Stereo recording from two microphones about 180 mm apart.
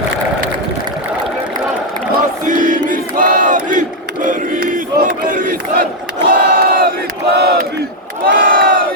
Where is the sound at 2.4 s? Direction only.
45° right (ahead or behind).